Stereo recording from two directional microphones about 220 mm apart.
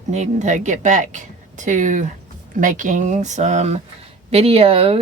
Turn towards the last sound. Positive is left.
turn(degrees=-25)  # may be behind; listen again after turning